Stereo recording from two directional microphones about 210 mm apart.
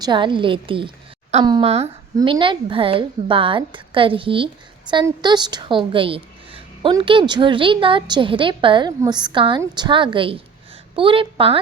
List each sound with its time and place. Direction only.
0.0 s a woman's voice: 20° right (ahead or behind)